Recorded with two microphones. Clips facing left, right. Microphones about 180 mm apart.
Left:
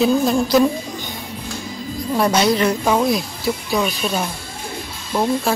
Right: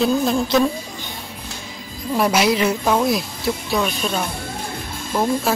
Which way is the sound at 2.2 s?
5° right (ahead or behind).